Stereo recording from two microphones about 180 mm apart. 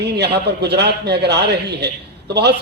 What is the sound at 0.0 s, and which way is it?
A man's voice, 70° right (ahead or behind).